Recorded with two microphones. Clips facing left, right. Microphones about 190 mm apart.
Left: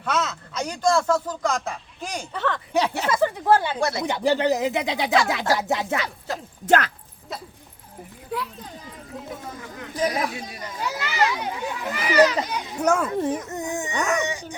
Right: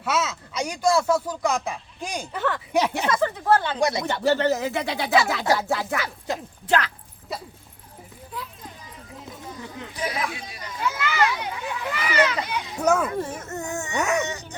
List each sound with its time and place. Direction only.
0.0 s speech: 5° right (ahead or behind)
3.1 s speech: 10° left (ahead or behind)
3.8 s speech: 15° right (ahead or behind)
4.0 s speech: 15° left (ahead or behind)
6.7 s speech: 50° left (ahead or behind)
9.9 s children playing: 40° left (ahead or behind)
12.8 s a child's voice: 10° right (ahead or behind)
13.1 s speech: 20° left (ahead or behind)
13.9 s speech: 10° right (ahead or behind)
14.2 s speech: 15° left (ahead or behind)